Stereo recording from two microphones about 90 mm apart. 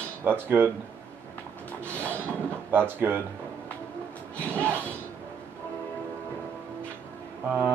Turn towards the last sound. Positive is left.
turn(degrees=-20)  # may be behind; listen again after turning